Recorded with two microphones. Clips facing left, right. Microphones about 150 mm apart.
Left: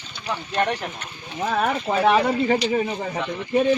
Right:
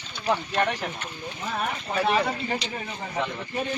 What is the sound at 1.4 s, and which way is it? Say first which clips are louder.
Speech: left 8 dB; 75° left (ahead or behind).